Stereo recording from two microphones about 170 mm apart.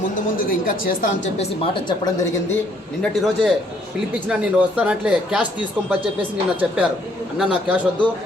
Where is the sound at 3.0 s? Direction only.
Centre (ahead or behind).